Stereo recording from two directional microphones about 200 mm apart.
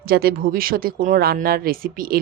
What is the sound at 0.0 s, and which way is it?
Speech, 50° right (ahead or behind).